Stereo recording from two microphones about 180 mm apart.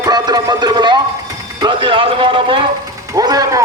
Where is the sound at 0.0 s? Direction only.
20° right (ahead or behind).